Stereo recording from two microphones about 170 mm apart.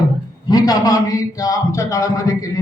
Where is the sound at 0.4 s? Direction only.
20° left (ahead or behind).